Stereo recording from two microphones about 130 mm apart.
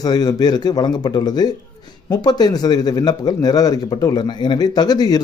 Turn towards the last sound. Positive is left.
turn(degrees=30)  # may be behind; listen again after turning